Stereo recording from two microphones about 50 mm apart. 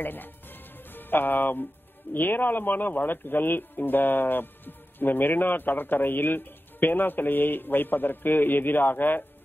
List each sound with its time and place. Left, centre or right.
0.0 s music: left
2.1 s speech: left